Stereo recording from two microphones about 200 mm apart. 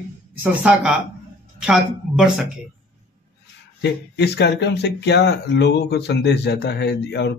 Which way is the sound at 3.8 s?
60° left (ahead or behind).